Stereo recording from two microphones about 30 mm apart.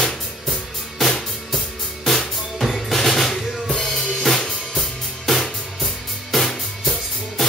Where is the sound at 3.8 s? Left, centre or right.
Centre.